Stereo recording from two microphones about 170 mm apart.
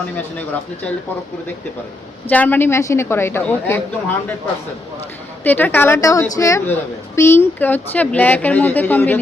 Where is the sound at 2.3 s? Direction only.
10° left (ahead or behind).